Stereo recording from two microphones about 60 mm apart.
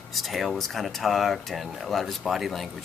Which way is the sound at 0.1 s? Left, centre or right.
Centre.